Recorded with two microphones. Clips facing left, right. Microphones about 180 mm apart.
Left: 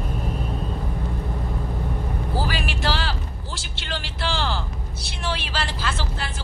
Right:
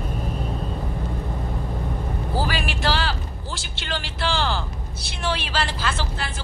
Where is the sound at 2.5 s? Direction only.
65° right (ahead or behind).